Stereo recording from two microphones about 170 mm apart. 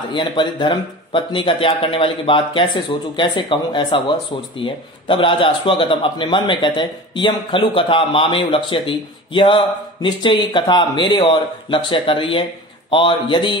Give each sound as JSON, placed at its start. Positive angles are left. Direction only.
{"t": 0.1, "sound": "a man's voice", "side_deg": 25}